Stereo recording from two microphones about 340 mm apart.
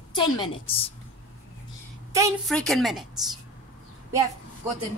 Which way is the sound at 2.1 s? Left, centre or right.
Centre.